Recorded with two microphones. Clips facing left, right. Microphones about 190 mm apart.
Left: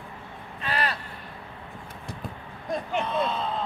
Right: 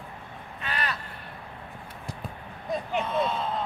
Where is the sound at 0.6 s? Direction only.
30° left (ahead or behind).